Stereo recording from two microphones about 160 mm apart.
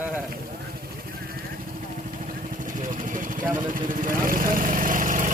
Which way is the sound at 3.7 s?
60° right (ahead or behind).